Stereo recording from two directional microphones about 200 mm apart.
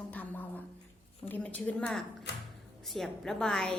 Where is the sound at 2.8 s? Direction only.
Centre (ahead or behind).